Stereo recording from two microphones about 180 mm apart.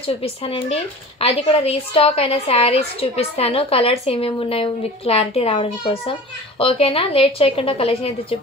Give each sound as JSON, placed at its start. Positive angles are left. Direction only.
{"t": 0.0, "sound": "a woman's voice", "side_deg": 30}